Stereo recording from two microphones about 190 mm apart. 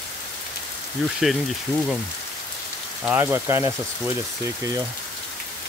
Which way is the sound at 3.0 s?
10° right (ahead or behind).